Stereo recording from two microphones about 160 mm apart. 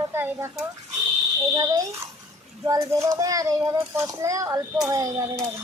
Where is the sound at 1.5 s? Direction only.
25° right (ahead or behind).